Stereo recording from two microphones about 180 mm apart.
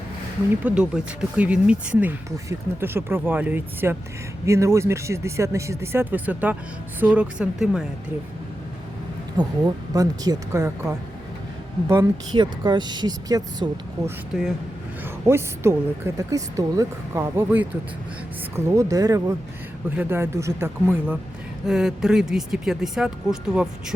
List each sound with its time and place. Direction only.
0.6 s speech: 5° right (ahead or behind)
9.4 s speech: 20° right (ahead or behind)
12.4 s speech: 25° right (ahead or behind)
15.3 s speech: 15° right (ahead or behind)